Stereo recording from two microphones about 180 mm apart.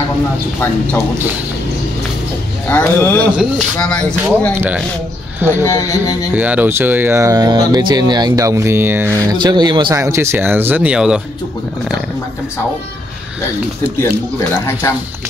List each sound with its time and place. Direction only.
2.7 s speech: 10° left (ahead or behind)
5.4 s speech: 15° right (ahead or behind)
10.0 s speech: 15° right (ahead or behind)
14.5 s speech: 15° left (ahead or behind)